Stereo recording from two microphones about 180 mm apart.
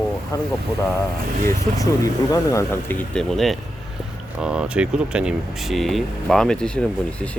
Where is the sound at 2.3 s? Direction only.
20° left (ahead or behind).